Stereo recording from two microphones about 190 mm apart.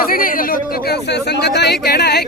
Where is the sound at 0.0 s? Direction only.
50° left (ahead or behind).